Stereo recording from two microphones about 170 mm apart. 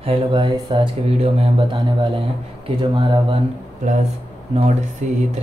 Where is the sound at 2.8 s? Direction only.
25° right (ahead or behind).